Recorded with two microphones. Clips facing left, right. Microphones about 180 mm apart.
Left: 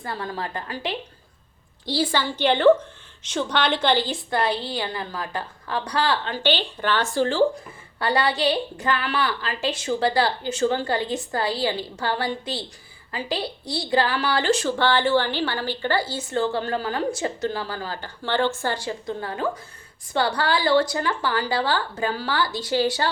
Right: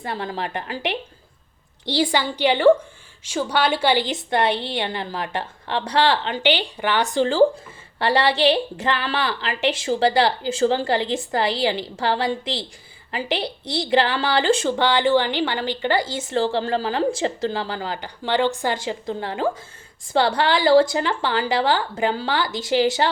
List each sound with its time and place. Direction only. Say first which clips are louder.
0.0 s a woman's voice: right 3 dB; 25° right (ahead or behind)
2.1 s a woman's voice: even; 15° right (ahead or behind)
7.9 s a woman's voice: right 3 dB; 25° right (ahead or behind)
10.2 s speech: right 3 dB; 90° right
11.1 s a woman's voice: right 3 dB; 20° right (ahead or behind)
16.3 s a woman's voice: right 3 dB; 30° right (ahead or behind)
20.7 s speech: right 6 dB; 90° right
20.9 s a woman's voice: right 2 dB; 25° right (ahead or behind)